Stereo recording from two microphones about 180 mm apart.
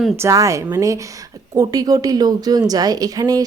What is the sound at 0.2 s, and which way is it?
A woman's voice, 15° right (ahead or behind).